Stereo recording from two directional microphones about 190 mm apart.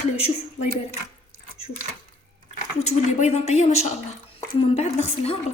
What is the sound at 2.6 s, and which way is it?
Speech, 35° left (ahead or behind).